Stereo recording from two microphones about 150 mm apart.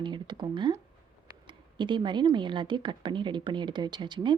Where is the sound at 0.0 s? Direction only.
30° right (ahead or behind).